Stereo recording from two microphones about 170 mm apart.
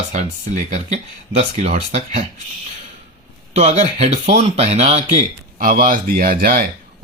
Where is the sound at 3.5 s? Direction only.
40° right (ahead or behind).